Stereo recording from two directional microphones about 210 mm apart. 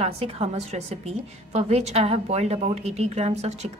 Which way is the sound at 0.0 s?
30° right (ahead or behind).